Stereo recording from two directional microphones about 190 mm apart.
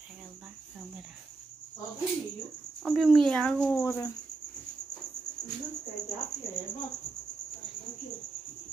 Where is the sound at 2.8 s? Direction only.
Centre (ahead or behind).